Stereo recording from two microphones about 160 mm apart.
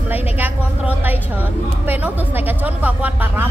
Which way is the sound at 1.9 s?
10° right (ahead or behind).